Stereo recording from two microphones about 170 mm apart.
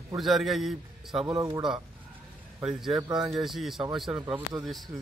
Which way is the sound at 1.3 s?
20° right (ahead or behind).